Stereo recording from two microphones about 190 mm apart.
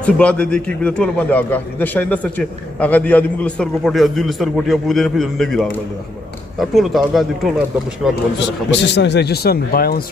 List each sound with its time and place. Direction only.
0.0 s a man's voice: 5° left (ahead or behind)
8.4 s speech: 65° left (ahead or behind)